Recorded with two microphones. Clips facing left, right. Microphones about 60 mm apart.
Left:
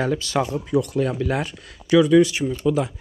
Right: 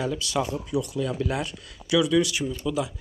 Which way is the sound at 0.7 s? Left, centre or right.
Left.